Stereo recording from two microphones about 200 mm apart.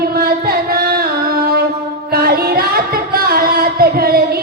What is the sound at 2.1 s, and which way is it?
Singing, 50° right (ahead or behind).